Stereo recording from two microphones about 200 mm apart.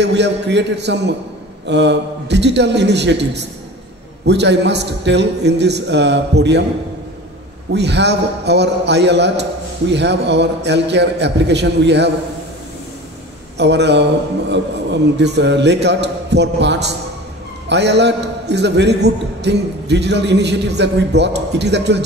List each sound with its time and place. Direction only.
0.0 s a man's voice: 60° right (ahead or behind)
7.7 s a man's voice: 60° right (ahead or behind)
13.6 s a man's voice: 60° right (ahead or behind)